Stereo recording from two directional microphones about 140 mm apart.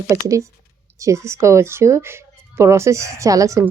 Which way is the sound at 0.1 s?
25° right (ahead or behind).